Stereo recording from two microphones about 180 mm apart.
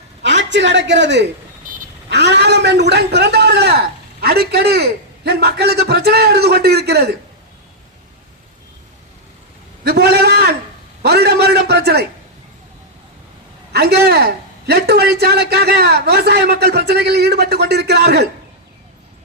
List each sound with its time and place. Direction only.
0.2 s a woman's voice: 80° right
9.8 s a sound: 65° right (ahead or behind)
13.7 s a man's voice: 60° right (ahead or behind)